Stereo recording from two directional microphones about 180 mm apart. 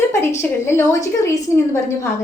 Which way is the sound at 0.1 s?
15° left (ahead or behind).